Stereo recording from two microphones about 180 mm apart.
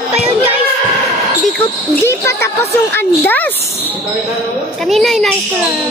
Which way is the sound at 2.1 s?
15° left (ahead or behind).